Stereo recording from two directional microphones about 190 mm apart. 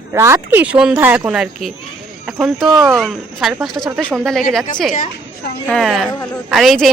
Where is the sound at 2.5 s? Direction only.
20° right (ahead or behind).